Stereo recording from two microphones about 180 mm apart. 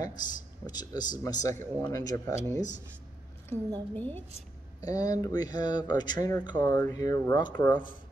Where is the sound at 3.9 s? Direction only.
10° left (ahead or behind).